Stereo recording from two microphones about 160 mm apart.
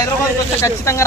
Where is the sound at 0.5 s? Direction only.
15° left (ahead or behind).